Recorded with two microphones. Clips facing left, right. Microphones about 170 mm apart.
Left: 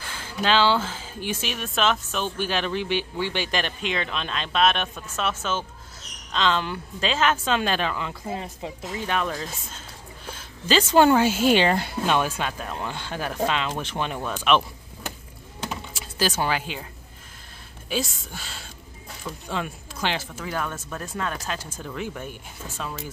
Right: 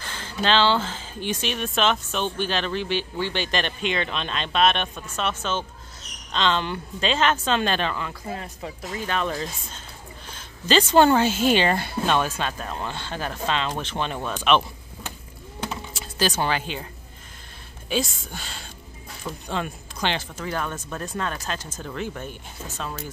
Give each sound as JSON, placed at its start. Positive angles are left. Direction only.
{"t": 0.0, "sound": "speech", "side_deg": 10}
{"t": 8.1, "sound": "speech", "side_deg": 20}
{"t": 10.7, "sound": "speech", "side_deg": 5}
{"t": 15.7, "sound": "a sound", "side_deg": 10}
{"t": 17.8, "sound": "speech", "side_deg": 5}